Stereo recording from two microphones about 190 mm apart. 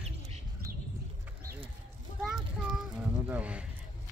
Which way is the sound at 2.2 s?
Centre (ahead or behind).